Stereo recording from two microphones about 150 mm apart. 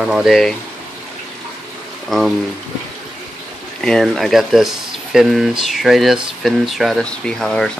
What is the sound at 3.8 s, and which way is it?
Speech, 5° left (ahead or behind).